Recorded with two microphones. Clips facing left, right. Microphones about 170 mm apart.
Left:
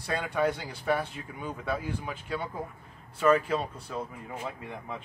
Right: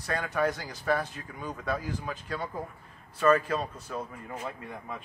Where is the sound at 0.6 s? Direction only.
10° left (ahead or behind).